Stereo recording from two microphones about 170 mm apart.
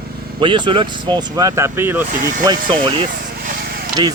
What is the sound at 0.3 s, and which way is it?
Speech, 30° right (ahead or behind).